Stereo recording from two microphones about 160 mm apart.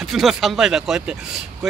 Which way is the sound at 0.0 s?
Centre (ahead or behind).